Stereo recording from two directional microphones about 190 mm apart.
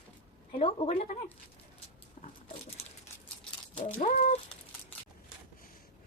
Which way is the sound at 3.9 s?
40° left (ahead or behind).